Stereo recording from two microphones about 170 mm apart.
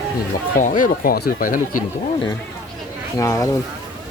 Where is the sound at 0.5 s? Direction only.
50° left (ahead or behind).